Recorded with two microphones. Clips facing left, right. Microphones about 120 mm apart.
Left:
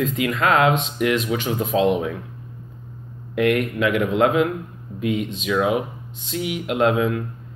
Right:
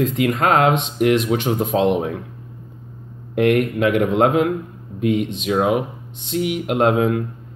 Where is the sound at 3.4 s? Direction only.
50° right (ahead or behind).